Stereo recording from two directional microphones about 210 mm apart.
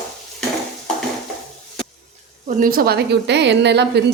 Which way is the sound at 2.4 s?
40° right (ahead or behind).